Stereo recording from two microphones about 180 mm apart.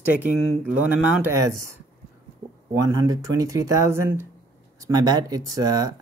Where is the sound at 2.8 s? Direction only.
15° right (ahead or behind).